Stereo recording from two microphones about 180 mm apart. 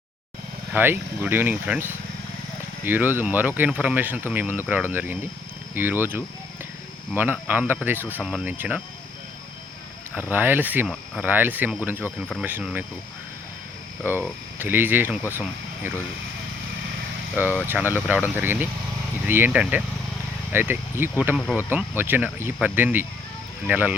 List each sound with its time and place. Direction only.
0.7 s speech: 10° right (ahead or behind)
10.3 s speech: 10° right (ahead or behind)
14.0 s speech: 10° right (ahead or behind)
17.3 s speech: 10° right (ahead or behind)
21.3 s speech: centre (ahead or behind)
21.6 s speech: 10° right (ahead or behind)